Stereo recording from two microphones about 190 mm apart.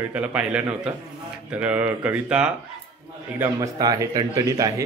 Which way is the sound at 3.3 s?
15° right (ahead or behind).